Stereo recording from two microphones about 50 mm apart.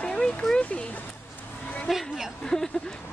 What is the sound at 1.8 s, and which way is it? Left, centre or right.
Speech, centre.